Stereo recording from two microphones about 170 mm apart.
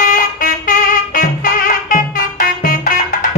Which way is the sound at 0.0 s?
50° left (ahead or behind).